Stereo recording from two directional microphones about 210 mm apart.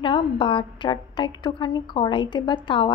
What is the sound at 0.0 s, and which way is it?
A woman's voice, 25° left (ahead or behind).